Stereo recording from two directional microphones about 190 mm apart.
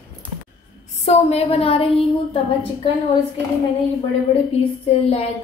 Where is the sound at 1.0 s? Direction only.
35° left (ahead or behind).